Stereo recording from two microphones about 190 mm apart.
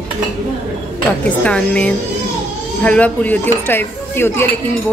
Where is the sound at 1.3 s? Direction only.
5° left (ahead or behind).